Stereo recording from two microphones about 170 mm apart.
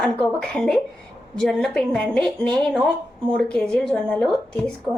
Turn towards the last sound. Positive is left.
turn(degrees=5)  # may be behind; listen again after turning